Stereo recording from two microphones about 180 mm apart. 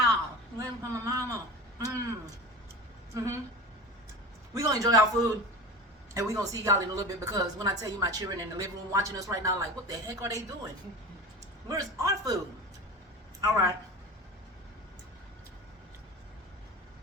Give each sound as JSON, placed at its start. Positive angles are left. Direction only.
{"t": 0.6, "sound": "a sound", "side_deg": -15}
{"t": 4.5, "sound": "a man's voice", "side_deg": -20}
{"t": 11.7, "sound": "a woman's voice", "side_deg": -20}
{"t": 13.4, "sound": "speech", "side_deg": -15}